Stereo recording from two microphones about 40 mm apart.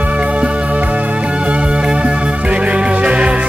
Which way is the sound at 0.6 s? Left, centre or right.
Right.